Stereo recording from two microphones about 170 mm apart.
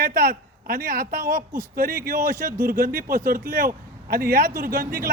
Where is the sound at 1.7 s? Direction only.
60° right (ahead or behind).